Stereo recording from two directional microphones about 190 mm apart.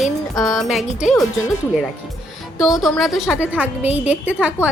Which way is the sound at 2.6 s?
Centre (ahead or behind).